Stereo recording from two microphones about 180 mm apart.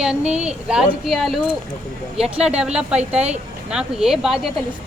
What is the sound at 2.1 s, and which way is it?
Speech, 35° right (ahead or behind).